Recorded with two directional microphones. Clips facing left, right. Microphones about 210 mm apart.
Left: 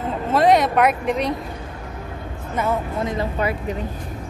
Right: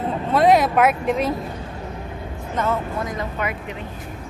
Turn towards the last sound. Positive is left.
turn(degrees=35)  # may be behind; listen again after turning